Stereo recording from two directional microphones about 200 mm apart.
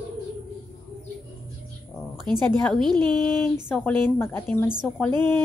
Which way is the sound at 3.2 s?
10° left (ahead or behind).